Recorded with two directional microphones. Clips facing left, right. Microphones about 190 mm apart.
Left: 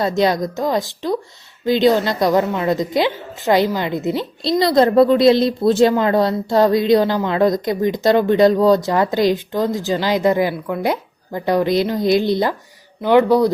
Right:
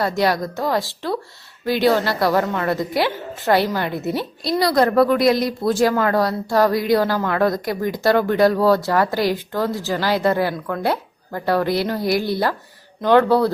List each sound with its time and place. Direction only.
0.0 s a woman's voice: 20° left (ahead or behind)